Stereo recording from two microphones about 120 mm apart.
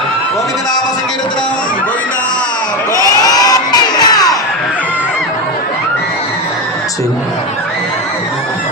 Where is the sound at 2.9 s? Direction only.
30° left (ahead or behind).